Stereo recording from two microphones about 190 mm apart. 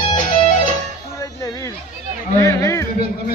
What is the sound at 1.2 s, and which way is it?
Music, 15° left (ahead or behind).